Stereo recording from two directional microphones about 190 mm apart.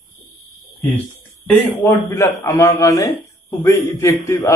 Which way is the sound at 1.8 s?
15° left (ahead or behind).